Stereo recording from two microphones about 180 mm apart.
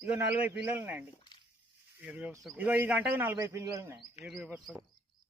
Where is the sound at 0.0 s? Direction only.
10° right (ahead or behind).